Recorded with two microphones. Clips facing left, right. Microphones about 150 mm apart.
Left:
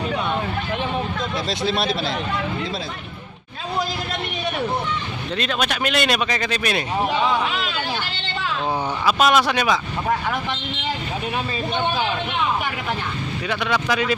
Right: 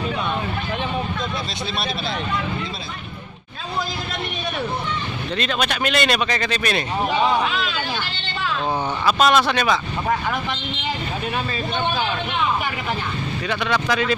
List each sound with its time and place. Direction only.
1.7 s speech: 90° left
5.4 s a man's voice: centre (ahead or behind)
9.0 s speech: 5° left (ahead or behind)
13.5 s a man's voice: 5° left (ahead or behind)